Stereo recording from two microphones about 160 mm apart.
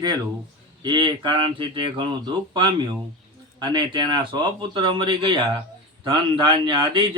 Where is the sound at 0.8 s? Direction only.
30° right (ahead or behind).